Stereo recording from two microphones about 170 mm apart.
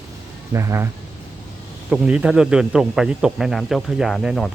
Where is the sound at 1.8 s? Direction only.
5° right (ahead or behind).